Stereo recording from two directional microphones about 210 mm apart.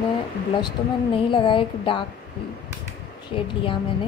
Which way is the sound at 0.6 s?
20° left (ahead or behind).